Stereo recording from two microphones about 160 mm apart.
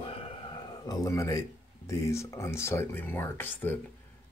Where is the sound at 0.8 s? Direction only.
20° left (ahead or behind).